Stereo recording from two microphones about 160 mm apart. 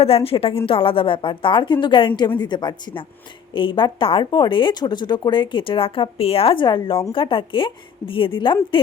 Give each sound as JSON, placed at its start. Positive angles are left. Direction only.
{"t": 0.0, "sound": "speech", "side_deg": 40}